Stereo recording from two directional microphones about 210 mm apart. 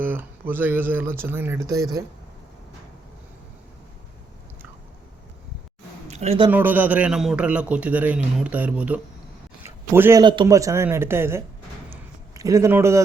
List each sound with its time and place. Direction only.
0.0 s a man's voice: 10° right (ahead or behind)
6.1 s speech: 30° right (ahead or behind)
6.5 s a man's voice: 10° right (ahead or behind)
11.9 s a sound: 15° right (ahead or behind)